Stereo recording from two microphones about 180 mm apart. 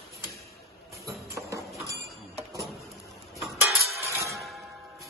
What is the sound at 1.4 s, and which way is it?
Clip-clop, 10° right (ahead or behind).